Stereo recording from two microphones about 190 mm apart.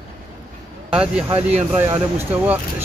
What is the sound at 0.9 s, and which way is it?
Speech, 5° right (ahead or behind).